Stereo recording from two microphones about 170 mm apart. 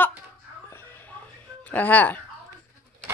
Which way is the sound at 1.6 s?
10° left (ahead or behind).